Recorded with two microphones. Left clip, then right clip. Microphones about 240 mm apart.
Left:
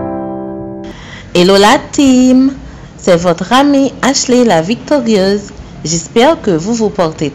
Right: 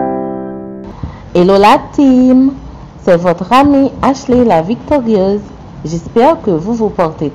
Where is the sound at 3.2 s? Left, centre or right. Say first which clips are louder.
Even; left.